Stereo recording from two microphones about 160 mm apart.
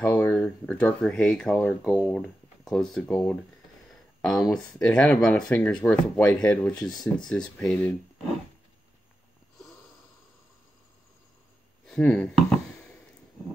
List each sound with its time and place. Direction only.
0.0 s speech: 15° left (ahead or behind)
4.5 s speech: 5° left (ahead or behind)
6.9 s speech: 25° left (ahead or behind)
7.2 s speech: 5° left (ahead or behind)
11.8 s speech: 5° left (ahead or behind)